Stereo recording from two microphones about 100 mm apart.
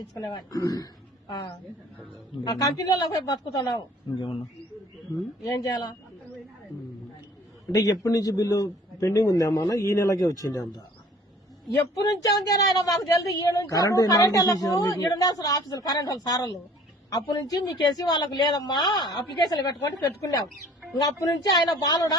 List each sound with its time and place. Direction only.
0.1 s a woman's voice: 40° left (ahead or behind)
1.3 s a woman's voice: 50° left (ahead or behind)
2.4 s a woman's voice: 40° left (ahead or behind)
5.5 s a woman's voice: 35° left (ahead or behind)
7.7 s a woman's voice: 40° left (ahead or behind)
11.9 s a woman's voice: 40° left (ahead or behind)